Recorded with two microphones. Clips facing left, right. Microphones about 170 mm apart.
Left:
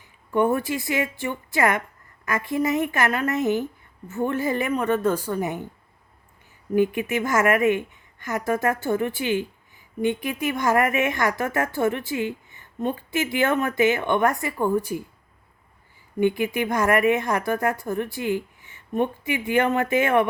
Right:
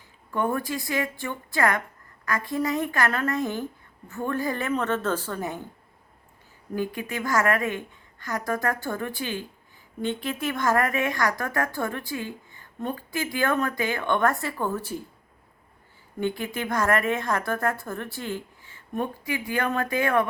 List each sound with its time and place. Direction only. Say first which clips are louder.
0.3 s a woman's voice: left 5 dB; 20° left (ahead or behind)
6.7 s a woman's voice: left 8 dB; 20° left (ahead or behind)
16.2 s a woman's voice: left 6 dB; 15° left (ahead or behind)